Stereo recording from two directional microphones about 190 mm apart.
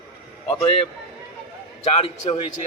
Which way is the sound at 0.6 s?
30° left (ahead or behind).